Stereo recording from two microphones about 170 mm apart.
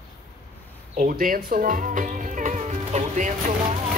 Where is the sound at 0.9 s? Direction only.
50° right (ahead or behind).